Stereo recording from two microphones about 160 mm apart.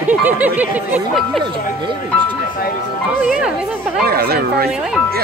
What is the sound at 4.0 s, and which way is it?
Speech, 70° right (ahead or behind).